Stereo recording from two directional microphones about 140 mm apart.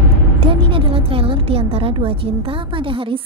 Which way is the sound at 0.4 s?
40° right (ahead or behind).